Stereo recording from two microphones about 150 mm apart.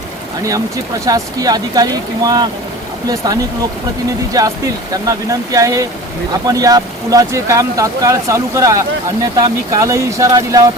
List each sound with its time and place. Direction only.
1.0 s speech: 25° right (ahead or behind)